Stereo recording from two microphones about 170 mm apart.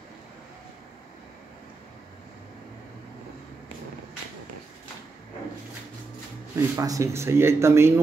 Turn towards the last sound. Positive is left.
turn(degrees=-15)  # may be behind; listen again after turning